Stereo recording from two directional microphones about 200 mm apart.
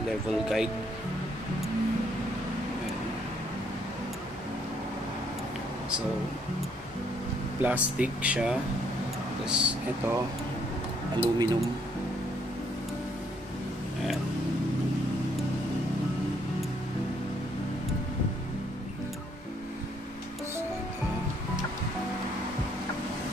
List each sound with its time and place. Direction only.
0.3 s speech: centre (ahead or behind)
7.6 s speech: 5° right (ahead or behind)
11.1 s speech: 25° right (ahead or behind)